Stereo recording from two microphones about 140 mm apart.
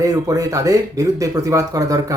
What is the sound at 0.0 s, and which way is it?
Speech, 25° right (ahead or behind).